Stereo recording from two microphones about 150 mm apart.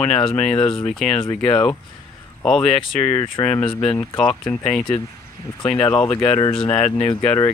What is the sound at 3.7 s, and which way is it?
Speech, 40° left (ahead or behind).